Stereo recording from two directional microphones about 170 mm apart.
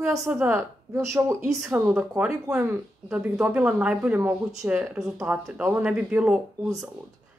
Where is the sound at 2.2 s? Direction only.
5° right (ahead or behind).